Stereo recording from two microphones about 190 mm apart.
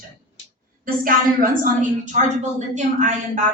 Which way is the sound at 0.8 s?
45° right (ahead or behind).